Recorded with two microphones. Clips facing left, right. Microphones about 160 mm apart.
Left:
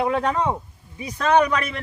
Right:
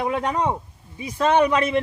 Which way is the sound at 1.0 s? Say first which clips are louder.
Even; 25° right (ahead or behind).